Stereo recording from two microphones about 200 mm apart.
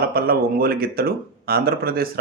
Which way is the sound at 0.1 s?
50° right (ahead or behind).